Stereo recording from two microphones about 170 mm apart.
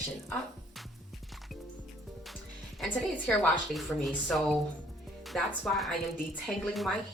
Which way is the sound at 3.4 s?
Centre (ahead or behind).